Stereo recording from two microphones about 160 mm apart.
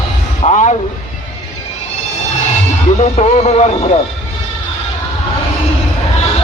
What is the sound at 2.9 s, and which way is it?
Speech, 45° left (ahead or behind).